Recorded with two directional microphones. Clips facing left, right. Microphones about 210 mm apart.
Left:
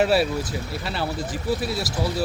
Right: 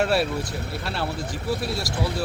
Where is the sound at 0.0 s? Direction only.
5° left (ahead or behind).